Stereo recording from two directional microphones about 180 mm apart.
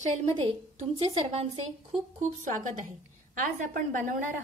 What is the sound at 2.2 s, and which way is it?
A woman's voice, 45° right (ahead or behind).